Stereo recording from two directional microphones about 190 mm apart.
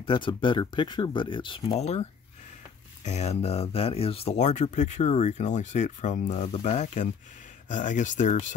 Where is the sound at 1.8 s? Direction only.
35° left (ahead or behind).